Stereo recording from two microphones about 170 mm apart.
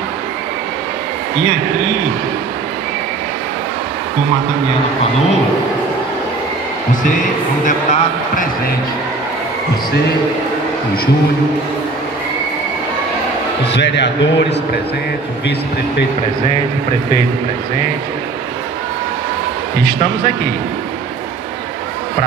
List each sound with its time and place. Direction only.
7.6 s speech: 50° left (ahead or behind)
13.7 s a man's voice: 90° left